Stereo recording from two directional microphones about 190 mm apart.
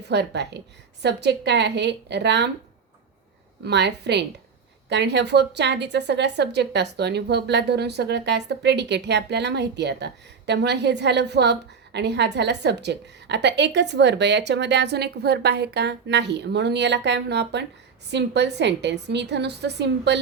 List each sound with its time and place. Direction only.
0.0 s a woman's voice: 65° right (ahead or behind)
3.6 s a woman's voice: 65° right (ahead or behind)